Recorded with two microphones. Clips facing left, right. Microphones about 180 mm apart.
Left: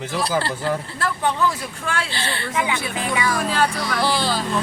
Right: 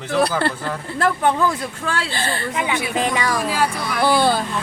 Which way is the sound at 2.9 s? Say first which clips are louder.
Right 3 dB; 35° right (ahead or behind).